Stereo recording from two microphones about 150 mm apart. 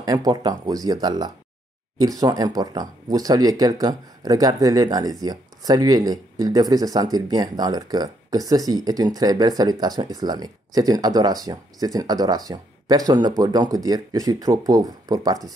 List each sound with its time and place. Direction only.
0.0 s speech: 25° right (ahead or behind)